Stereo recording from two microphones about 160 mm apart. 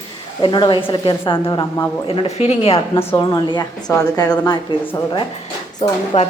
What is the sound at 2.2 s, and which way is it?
Speech, 40° left (ahead or behind).